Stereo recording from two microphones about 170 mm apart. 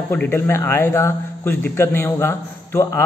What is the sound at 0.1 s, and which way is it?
A man's voice, 10° left (ahead or behind).